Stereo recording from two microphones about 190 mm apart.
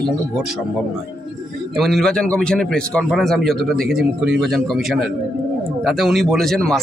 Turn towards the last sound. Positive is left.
turn(degrees=0)  # may be behind; listen again after turning